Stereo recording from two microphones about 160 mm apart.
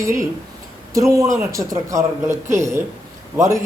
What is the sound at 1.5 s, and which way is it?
A man's voice, 20° right (ahead or behind).